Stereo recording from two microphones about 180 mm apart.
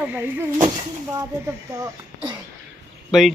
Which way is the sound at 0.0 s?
10° right (ahead or behind).